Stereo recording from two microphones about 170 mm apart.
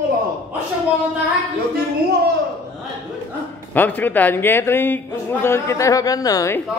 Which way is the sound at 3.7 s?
10° left (ahead or behind).